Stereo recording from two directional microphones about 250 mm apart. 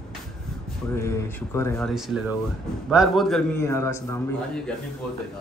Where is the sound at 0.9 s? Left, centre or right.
Centre.